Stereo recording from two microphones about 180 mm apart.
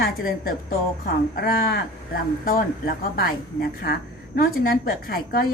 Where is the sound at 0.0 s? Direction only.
55° left (ahead or behind).